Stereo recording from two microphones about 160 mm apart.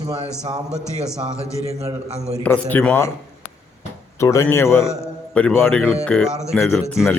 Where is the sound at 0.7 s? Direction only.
5° right (ahead or behind).